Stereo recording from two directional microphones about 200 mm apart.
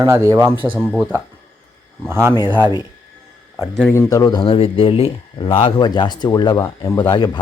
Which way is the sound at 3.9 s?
15° left (ahead or behind).